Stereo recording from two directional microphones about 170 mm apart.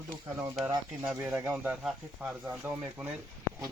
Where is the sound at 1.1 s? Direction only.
10° right (ahead or behind).